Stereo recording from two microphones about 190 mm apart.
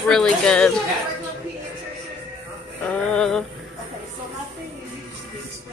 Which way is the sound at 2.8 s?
5° left (ahead or behind).